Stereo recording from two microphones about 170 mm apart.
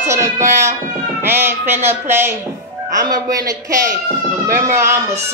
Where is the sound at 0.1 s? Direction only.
15° right (ahead or behind).